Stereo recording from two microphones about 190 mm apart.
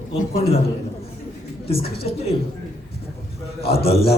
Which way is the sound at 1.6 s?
30° left (ahead or behind).